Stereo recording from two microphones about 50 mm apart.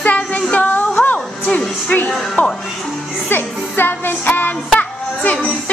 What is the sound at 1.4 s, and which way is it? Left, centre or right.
Music, centre.